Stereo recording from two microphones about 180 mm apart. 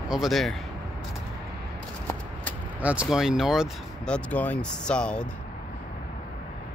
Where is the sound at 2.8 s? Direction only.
5° right (ahead or behind).